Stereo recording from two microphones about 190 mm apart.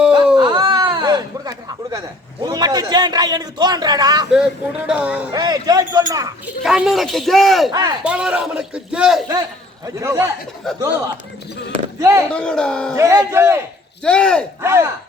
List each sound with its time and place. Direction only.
0.3 s a sound: 25° right (ahead or behind)
2.4 s a man's voice: 20° right (ahead or behind)
4.9 s a man's voice: 5° right (ahead or behind)
5.3 s a man's voice: 20° right (ahead or behind)
6.4 s speech: 5° right (ahead or behind)
7.7 s a man's voice: 20° right (ahead or behind)
8.0 s speech: 5° right (ahead or behind)
9.8 s a man's voice: 15° right (ahead or behind)
12.3 s speech: 5° left (ahead or behind)
13.0 s a man's voice: 15° right (ahead or behind)
14.0 s speech: 5° left (ahead or behind)
14.6 s a man's voice: 15° right (ahead or behind)